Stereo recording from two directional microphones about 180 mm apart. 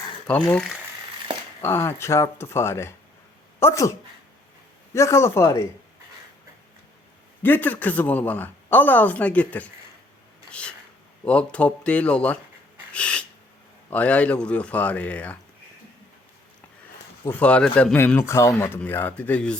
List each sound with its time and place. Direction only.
0.3 s speech: 5° left (ahead or behind)
1.6 s speech: 15° left (ahead or behind)
4.9 s speech: 15° left (ahead or behind)
7.4 s speech: 10° left (ahead or behind)
10.5 s a sound: 5° left (ahead or behind)
11.3 s speech: 5° left (ahead or behind)
12.9 s a sound: 5° left (ahead or behind)
13.9 s speech: 5° left (ahead or behind)
17.2 s speech: 10° left (ahead or behind)